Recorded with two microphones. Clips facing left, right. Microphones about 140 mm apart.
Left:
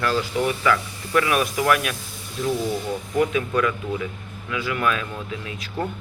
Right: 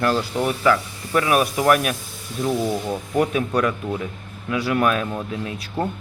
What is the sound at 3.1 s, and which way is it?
Speech, 40° right (ahead or behind).